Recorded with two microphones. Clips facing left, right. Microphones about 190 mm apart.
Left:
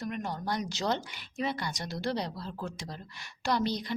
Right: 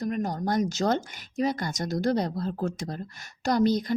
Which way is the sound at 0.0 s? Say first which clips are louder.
Right 7 dB; 40° right (ahead or behind).